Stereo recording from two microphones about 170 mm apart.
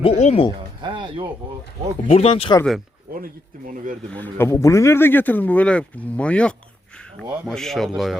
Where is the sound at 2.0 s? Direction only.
35° left (ahead or behind).